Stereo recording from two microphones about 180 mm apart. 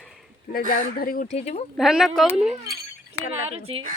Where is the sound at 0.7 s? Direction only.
55° left (ahead or behind).